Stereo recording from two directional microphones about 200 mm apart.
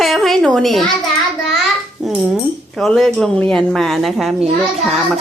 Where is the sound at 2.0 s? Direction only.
Centre (ahead or behind).